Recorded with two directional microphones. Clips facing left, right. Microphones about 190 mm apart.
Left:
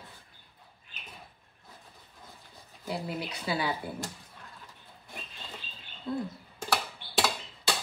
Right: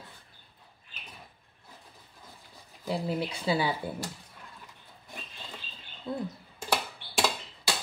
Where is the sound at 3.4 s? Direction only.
25° right (ahead or behind).